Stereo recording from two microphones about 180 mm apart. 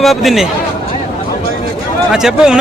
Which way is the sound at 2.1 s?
5° right (ahead or behind).